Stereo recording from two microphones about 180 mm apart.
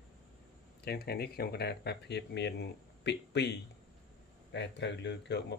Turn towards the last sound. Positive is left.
turn(degrees=70)  # may be behind; listen again after turning